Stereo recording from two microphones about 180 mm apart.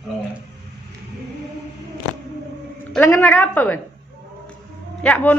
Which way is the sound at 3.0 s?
10° left (ahead or behind).